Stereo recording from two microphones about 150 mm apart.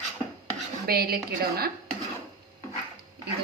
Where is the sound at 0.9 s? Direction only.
90° right.